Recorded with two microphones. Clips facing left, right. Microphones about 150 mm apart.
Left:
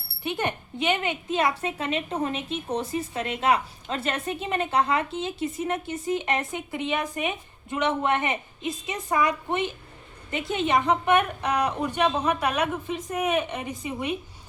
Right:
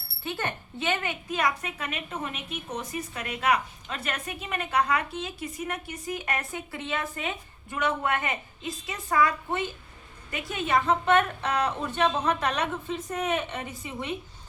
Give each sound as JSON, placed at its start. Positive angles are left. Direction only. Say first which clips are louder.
{"t": 0.2, "sound": "a woman's voice", "louder": "left 4 dB", "side_deg": 20}